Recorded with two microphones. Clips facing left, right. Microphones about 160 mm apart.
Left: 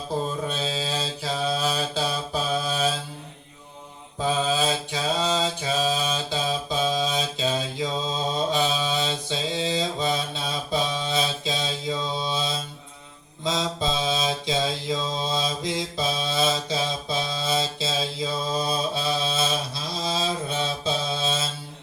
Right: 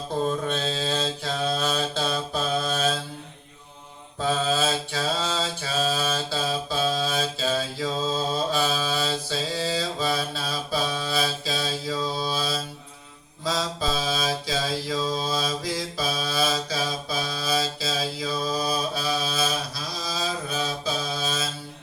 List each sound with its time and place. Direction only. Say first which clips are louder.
0.4 s mantra: right 1 dB; 5° left (ahead or behind)
4.2 s mantra: even; 15° left (ahead or behind)